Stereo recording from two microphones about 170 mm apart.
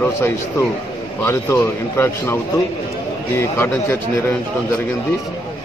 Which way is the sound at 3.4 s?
15° left (ahead or behind).